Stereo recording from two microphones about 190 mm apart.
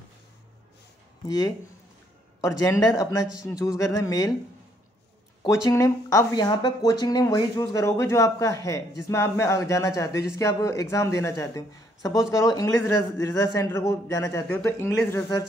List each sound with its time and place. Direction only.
1.2 s speech: 20° left (ahead or behind)
5.4 s speech: 15° left (ahead or behind)